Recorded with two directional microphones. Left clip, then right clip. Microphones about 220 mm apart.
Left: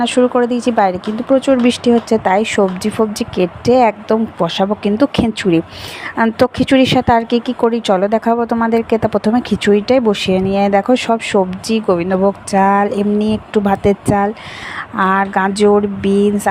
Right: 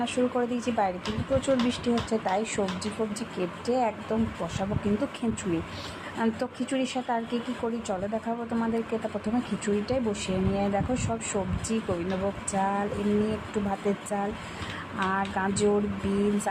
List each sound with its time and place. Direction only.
0.0 s a woman's voice: 40° left (ahead or behind)